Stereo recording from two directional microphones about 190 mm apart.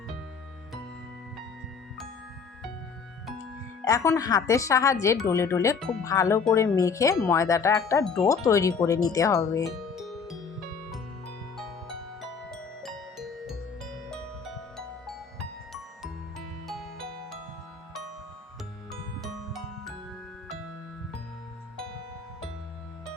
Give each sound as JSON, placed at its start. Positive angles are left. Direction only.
{"t": 3.8, "sound": "speech", "side_deg": 15}
{"t": 8.0, "sound": "wind chime", "side_deg": 0}
{"t": 8.3, "sound": "speech", "side_deg": 15}
{"t": 9.9, "sound": "music", "side_deg": 0}
{"t": 11.5, "sound": "music", "side_deg": 0}
{"t": 16.6, "sound": "music", "side_deg": 0}
{"t": 18.9, "sound": "music", "side_deg": 0}